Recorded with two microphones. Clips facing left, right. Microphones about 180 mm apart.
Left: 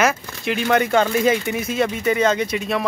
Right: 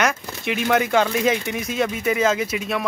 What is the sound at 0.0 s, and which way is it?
Speech, centre (ahead or behind).